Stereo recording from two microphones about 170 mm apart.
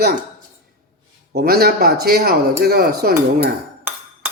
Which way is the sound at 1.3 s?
65° right (ahead or behind).